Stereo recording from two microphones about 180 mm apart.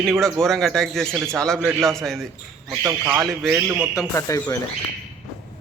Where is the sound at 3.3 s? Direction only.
Centre (ahead or behind).